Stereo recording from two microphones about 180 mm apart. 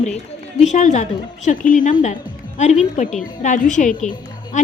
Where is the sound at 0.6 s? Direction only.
40° left (ahead or behind).